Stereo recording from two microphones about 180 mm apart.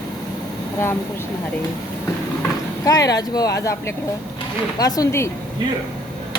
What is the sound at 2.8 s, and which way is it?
Speech, 20° left (ahead or behind).